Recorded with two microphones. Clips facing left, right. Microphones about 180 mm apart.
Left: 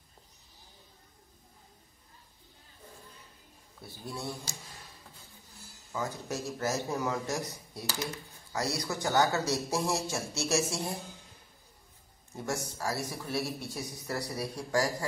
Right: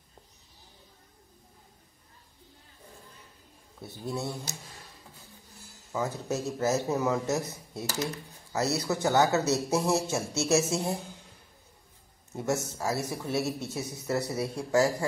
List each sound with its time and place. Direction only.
3.8 s a man's voice: 25° right (ahead or behind)
5.9 s a man's voice: 20° right (ahead or behind)
8.5 s a man's voice: 25° right (ahead or behind)
12.3 s a man's voice: 20° right (ahead or behind)